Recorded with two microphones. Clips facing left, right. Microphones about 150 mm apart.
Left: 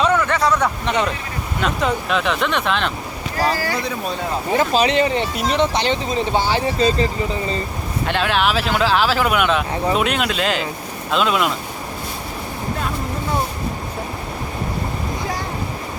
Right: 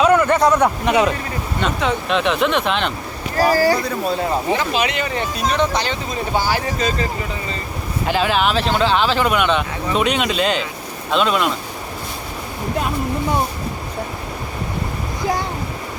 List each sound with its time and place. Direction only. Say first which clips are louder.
0.0 s a sound: right 4 dB; 10° right (ahead or behind)
0.3 s speech: right 3 dB; 15° right (ahead or behind)
1.6 s speech: even; centre (ahead or behind)
4.5 s speech: left 4 dB; 35° left (ahead or behind)
8.0 s speech: right 1 dB; centre (ahead or behind)